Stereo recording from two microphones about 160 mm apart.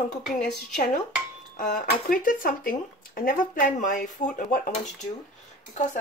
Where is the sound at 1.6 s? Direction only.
50° left (ahead or behind).